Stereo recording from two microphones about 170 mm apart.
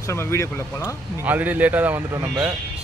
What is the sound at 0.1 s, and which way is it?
Speech, 15° left (ahead or behind).